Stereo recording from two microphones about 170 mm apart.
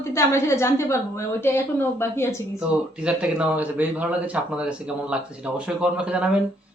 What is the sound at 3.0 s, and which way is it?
A man's voice, 10° right (ahead or behind).